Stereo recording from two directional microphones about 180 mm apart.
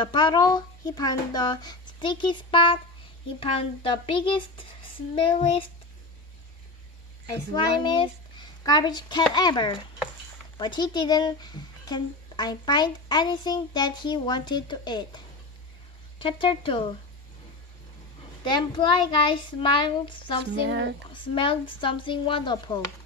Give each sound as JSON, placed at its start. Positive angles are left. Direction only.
{"t": 0.0, "sound": "a woman's voice", "side_deg": 25}
{"t": 7.8, "sound": "a woman's voice", "side_deg": 25}
{"t": 18.4, "sound": "a woman's voice", "side_deg": 25}
{"t": 20.6, "sound": "speech", "side_deg": -70}
{"t": 21.1, "sound": "a woman's voice", "side_deg": 30}